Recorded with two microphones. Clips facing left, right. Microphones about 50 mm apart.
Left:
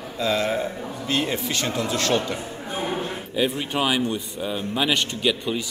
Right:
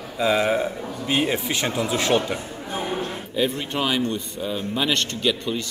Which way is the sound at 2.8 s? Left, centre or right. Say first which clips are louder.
Even; centre.